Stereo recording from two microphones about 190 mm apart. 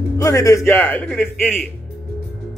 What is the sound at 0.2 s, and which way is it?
A man's voice, 15° left (ahead or behind).